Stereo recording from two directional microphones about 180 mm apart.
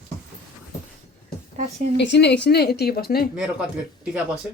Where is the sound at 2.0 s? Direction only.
70° left (ahead or behind).